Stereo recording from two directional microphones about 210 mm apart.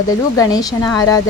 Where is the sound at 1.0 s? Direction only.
15° left (ahead or behind).